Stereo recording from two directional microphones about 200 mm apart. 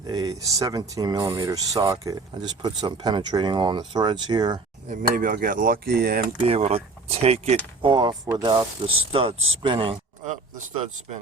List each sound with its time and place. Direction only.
0.1 s speech: 20° right (ahead or behind)
4.9 s speech: 45° right (ahead or behind)
6.4 s speech: 30° right (ahead or behind)
10.2 s speech: 40° right (ahead or behind)